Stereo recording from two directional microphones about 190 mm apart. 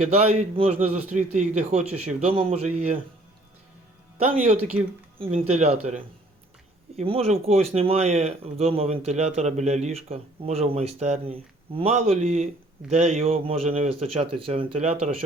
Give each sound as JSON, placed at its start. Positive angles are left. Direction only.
{"t": 0.0, "sound": "speech", "side_deg": -35}
{"t": 5.3, "sound": "speech", "side_deg": -40}